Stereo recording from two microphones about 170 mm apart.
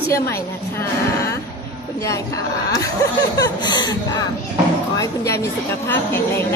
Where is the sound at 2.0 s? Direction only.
20° left (ahead or behind).